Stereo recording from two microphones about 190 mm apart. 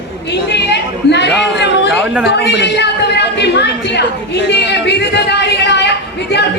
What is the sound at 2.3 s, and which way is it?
A woman's voice, 65° left (ahead or behind).